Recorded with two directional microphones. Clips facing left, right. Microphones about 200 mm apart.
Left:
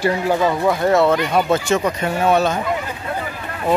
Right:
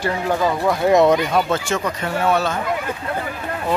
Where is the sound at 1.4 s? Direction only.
20° left (ahead or behind).